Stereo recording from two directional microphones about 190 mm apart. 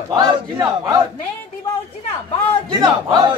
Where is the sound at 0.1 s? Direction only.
25° right (ahead or behind).